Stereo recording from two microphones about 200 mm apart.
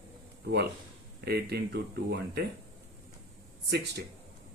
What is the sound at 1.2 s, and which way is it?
Speech, 55° right (ahead or behind).